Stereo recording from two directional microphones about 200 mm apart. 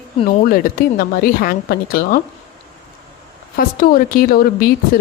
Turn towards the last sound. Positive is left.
turn(degrees=45)  # may be behind; listen again after turning